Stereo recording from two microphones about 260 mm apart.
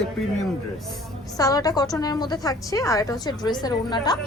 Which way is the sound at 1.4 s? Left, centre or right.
Centre.